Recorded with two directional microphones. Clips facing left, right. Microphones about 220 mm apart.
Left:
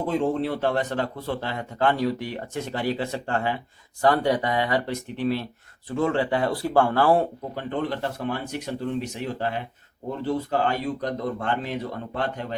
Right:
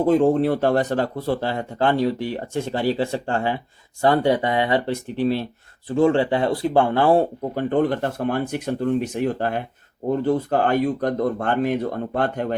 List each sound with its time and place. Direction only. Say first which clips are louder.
0.2 s speech: right 6 dB; 45° right (ahead or behind); by 7.2 s 20° right (ahead or behind)
7.5 s speech: right 10 dB; 50° right (ahead or behind)